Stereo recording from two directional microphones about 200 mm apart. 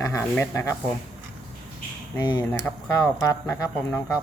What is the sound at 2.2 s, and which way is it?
Speech, 20° left (ahead or behind).